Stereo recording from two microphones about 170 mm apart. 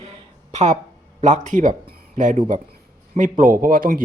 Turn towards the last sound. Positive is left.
turn(degrees=-55)  # may be behind; listen again after turning